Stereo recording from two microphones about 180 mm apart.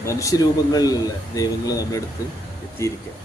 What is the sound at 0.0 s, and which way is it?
Speech, 15° left (ahead or behind).